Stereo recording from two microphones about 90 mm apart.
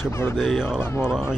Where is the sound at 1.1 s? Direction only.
10° right (ahead or behind).